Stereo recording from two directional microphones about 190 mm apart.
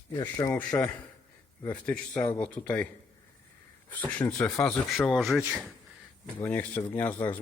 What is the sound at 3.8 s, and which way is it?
Speech, 10° left (ahead or behind).